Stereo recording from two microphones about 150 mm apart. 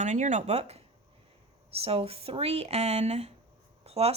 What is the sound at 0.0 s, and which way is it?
Speech, 55° right (ahead or behind).